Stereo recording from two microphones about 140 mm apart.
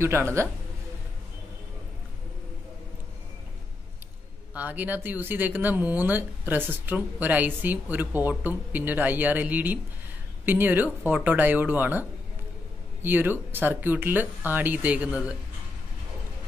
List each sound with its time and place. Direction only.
0.0 s speech: 20° right (ahead or behind)
4.6 s speech: 10° right (ahead or behind)